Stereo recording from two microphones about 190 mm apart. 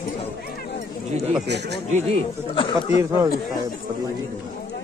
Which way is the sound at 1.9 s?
35° right (ahead or behind).